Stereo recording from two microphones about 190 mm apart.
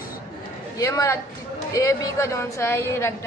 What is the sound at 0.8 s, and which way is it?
A woman's voice, 15° left (ahead or behind).